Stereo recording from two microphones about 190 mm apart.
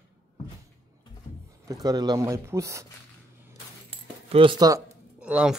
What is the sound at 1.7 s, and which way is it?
Speech, 20° right (ahead or behind).